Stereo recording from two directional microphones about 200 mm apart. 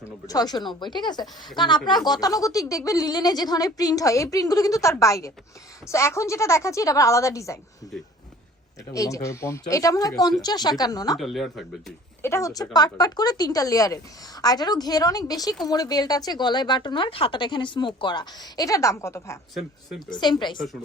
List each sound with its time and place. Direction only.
0.3 s speech: 20° left (ahead or behind)
8.9 s speech: 15° left (ahead or behind)
11.2 s speech: centre (ahead or behind)
12.2 s speech: 15° left (ahead or behind)